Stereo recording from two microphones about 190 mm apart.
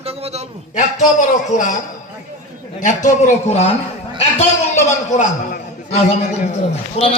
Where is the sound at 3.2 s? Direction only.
35° left (ahead or behind).